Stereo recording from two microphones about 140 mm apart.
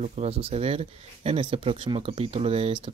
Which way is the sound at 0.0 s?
50° right (ahead or behind).